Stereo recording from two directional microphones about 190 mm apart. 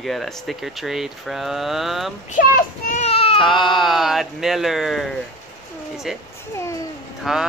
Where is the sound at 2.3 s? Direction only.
45° left (ahead or behind); by 3.4 s 30° left (ahead or behind).